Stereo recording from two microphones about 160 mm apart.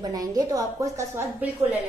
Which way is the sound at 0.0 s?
25° right (ahead or behind).